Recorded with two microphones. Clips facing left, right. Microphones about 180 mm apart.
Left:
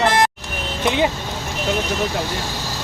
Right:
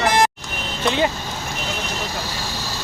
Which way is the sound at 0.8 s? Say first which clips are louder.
Left 1 dB; 15° left (ahead or behind).